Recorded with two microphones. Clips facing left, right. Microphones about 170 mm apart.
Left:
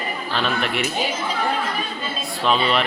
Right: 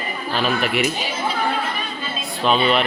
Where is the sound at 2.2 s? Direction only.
Centre (ahead or behind).